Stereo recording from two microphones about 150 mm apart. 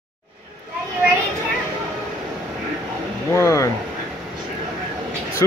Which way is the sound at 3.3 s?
20° left (ahead or behind).